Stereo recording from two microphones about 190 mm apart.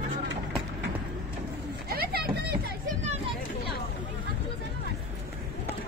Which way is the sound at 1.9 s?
55° right (ahead or behind).